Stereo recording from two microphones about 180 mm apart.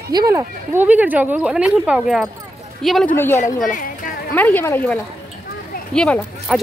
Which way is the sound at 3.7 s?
50° left (ahead or behind).